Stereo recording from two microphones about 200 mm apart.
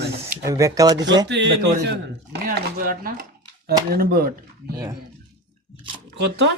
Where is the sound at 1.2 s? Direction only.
60° right (ahead or behind).